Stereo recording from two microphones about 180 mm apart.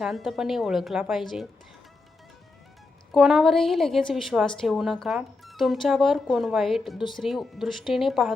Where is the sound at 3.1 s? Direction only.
Centre (ahead or behind).